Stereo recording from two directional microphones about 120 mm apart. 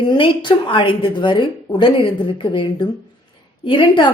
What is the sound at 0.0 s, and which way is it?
A woman's voice, 40° left (ahead or behind).